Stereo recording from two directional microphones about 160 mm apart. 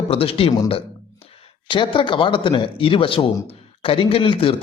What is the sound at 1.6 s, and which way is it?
A man's voice, 30° left (ahead or behind).